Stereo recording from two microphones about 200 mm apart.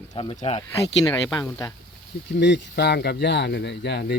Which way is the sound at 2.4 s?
55° left (ahead or behind).